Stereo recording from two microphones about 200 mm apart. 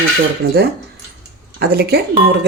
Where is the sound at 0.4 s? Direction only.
90° right.